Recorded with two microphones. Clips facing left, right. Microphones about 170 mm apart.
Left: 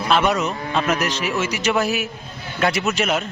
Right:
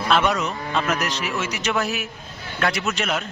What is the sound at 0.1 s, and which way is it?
A man's voice, 5° left (ahead or behind).